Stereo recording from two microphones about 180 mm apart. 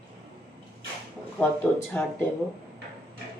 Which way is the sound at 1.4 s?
10° left (ahead or behind).